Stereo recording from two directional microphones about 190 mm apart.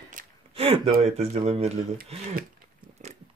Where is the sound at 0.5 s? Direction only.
30° right (ahead or behind).